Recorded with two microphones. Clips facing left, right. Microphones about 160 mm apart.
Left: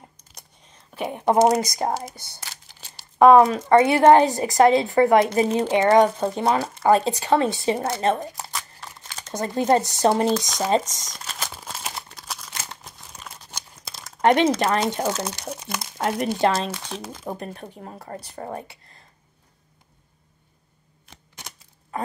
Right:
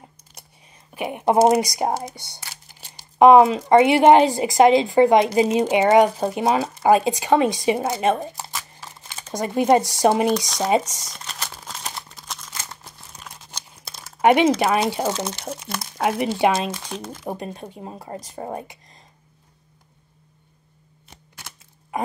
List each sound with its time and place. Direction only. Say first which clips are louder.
0.2 s a sound: right 1 dB; 10° right (ahead or behind)
1.5 s speech: right 3 dB; 15° right (ahead or behind)
2.1 s speech: right 3 dB; 70° right (ahead or behind)
3.2 s speech: right 1 dB; 15° right (ahead or behind)
8.4 s crumpling: even; centre (ahead or behind)
10.7 s speech: right 2 dB; 10° right (ahead or behind)
11.1 s a sound: left 1 dB; 5° left (ahead or behind)
13.4 s crumpling: even; 5° left (ahead or behind)
14.2 s speech: right 2 dB; 10° right (ahead or behind)
15.5 s speech: right 1 dB; 10° left (ahead or behind)
15.8 s speech: right 3 dB; 10° right (ahead or behind)